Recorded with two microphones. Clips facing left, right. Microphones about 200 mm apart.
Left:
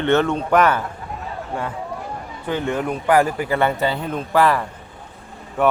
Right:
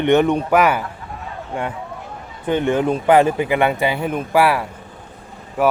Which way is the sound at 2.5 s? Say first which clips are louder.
Right 5 dB; 25° right (ahead or behind).